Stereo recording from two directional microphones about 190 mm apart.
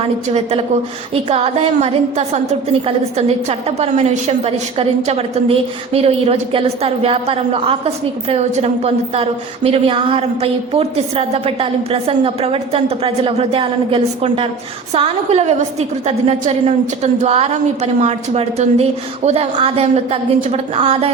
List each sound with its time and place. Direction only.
1.1 s a woman's voice: 30° right (ahead or behind)